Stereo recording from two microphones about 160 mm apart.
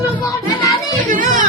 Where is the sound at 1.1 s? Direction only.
55° right (ahead or behind).